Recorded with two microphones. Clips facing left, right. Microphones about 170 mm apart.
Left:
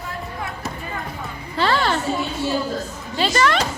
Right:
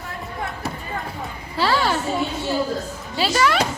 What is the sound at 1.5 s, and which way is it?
Speech, 5° right (ahead or behind).